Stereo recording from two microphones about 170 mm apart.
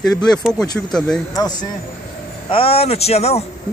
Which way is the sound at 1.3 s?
20° left (ahead or behind).